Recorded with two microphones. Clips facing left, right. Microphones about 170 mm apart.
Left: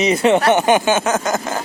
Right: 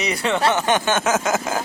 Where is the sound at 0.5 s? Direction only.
10° left (ahead or behind).